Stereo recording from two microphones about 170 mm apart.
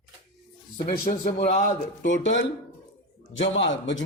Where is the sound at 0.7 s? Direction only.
50° left (ahead or behind).